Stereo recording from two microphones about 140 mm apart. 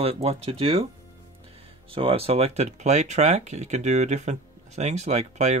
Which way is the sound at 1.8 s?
40° right (ahead or behind).